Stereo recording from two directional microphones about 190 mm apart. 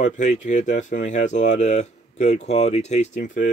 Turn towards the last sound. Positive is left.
turn(degrees=40)  # may be behind; listen again after turning